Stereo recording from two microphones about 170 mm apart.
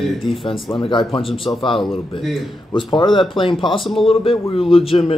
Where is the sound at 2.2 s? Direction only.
Centre (ahead or behind).